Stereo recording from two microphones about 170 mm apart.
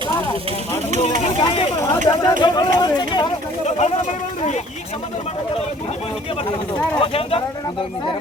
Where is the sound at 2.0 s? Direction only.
25° left (ahead or behind).